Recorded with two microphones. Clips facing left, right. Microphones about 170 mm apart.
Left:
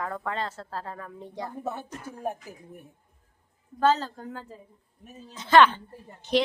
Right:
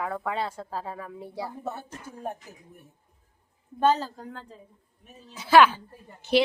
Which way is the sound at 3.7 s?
15° right (ahead or behind).